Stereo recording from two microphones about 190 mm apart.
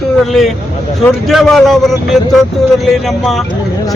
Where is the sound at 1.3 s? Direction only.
Centre (ahead or behind).